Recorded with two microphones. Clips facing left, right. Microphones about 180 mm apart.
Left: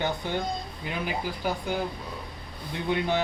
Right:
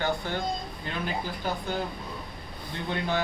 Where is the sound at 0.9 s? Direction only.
10° left (ahead or behind).